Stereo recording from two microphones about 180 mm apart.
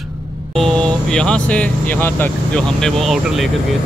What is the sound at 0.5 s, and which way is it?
Speech, 5° left (ahead or behind).